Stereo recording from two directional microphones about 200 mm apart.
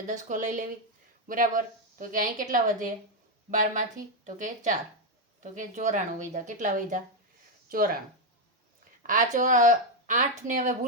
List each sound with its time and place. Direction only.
0.1 s speech: 40° right (ahead or behind)
9.0 s speech: 40° right (ahead or behind)